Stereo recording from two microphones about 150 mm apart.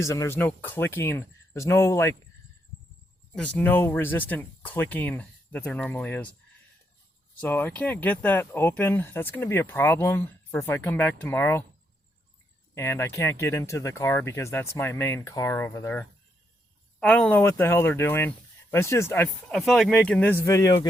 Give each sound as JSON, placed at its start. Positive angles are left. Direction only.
{"t": 0.0, "sound": "speech", "side_deg": 20}
{"t": 3.3, "sound": "speech", "side_deg": 10}
{"t": 7.4, "sound": "speech", "side_deg": 15}
{"t": 12.7, "sound": "speech", "side_deg": 15}
{"t": 17.0, "sound": "speech", "side_deg": 5}
{"t": 19.5, "sound": "speech", "side_deg": 0}